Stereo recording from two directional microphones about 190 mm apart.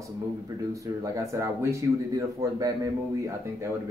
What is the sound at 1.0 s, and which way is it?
A man's voice, 15° right (ahead or behind).